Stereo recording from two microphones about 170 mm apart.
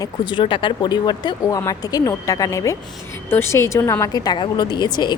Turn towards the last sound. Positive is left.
turn(degrees=25)  # may be behind; listen again after turning